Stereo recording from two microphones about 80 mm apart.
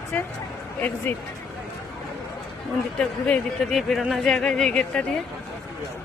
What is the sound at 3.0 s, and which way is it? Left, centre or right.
Speech, centre.